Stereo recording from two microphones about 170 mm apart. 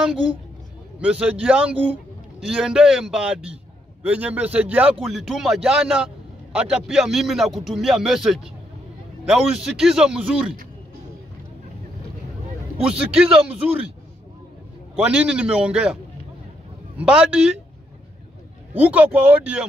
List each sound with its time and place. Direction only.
1.2 s a man's voice: 5° right (ahead or behind)
12.8 s a man's voice: 5° right (ahead or behind)
15.0 s a man's voice: 5° right (ahead or behind)
18.7 s speech: 10° right (ahead or behind)